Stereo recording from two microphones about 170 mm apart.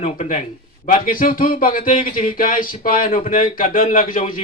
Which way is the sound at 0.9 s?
55° left (ahead or behind).